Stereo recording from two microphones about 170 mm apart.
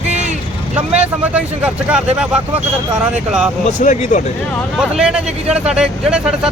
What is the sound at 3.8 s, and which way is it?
Speech, 45° left (ahead or behind).